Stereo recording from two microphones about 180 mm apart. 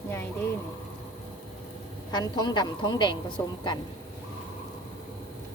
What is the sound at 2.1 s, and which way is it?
A woman's voice, 25° left (ahead or behind).